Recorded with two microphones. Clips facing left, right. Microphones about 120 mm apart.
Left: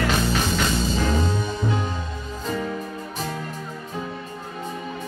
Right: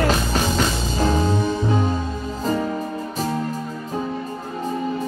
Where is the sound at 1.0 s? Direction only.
40° right (ahead or behind).